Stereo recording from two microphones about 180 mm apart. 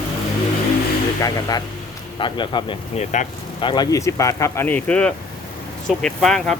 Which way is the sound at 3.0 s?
40° left (ahead or behind).